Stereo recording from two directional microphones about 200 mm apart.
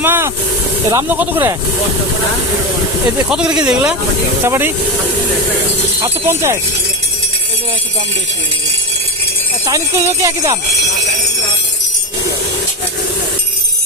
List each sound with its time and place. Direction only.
0.0 s vehicle: 10° right (ahead or behind)
0.9 s speech: 10° right (ahead or behind)
3.2 s speech: 5° right (ahead or behind)
6.0 s speech: 15° right (ahead or behind)
9.6 s speech: 15° right (ahead or behind)